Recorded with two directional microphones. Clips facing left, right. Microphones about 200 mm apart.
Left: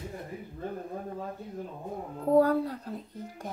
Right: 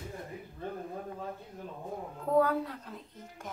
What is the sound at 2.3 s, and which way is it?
Speech, 35° left (ahead or behind).